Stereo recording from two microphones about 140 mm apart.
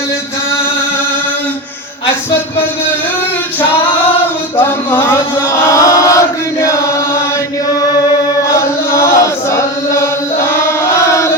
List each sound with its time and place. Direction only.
4.5 s a sound: 15° left (ahead or behind)
5.6 s chant: 20° left (ahead or behind)
8.9 s chant: 20° left (ahead or behind)